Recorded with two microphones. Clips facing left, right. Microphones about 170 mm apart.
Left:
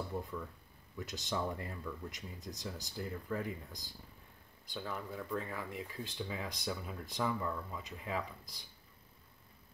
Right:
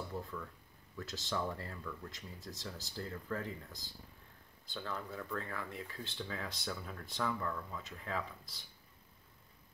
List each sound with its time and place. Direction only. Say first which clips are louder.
0.1 s speech: left 2 dB; 20° left (ahead or behind)